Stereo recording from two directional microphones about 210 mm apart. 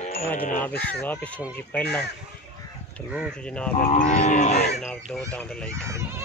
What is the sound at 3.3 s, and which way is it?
Speech, 5° left (ahead or behind).